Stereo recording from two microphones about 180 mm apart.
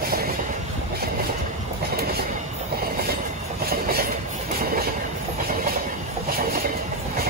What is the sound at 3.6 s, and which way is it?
Train, 55° right (ahead or behind).